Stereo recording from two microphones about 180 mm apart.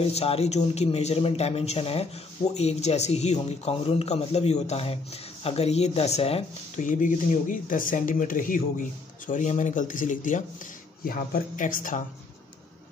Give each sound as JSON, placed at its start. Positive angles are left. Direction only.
{"t": 0.0, "sound": "speech", "side_deg": 35}